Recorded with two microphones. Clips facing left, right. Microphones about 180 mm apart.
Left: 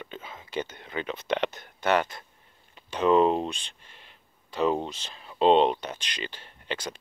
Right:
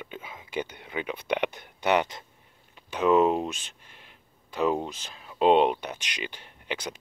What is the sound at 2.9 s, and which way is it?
Speech, 5° right (ahead or behind).